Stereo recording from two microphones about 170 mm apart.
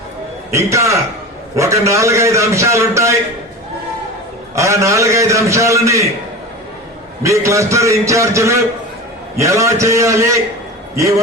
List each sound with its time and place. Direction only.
0.5 s a man's voice: 15° right (ahead or behind)
4.5 s a man's voice: 15° right (ahead or behind)
7.2 s a man's voice: 15° right (ahead or behind)